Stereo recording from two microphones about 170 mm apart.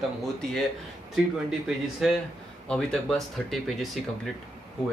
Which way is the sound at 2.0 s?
5° right (ahead or behind).